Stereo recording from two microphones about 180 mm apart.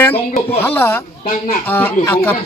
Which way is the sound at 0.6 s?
10° left (ahead or behind).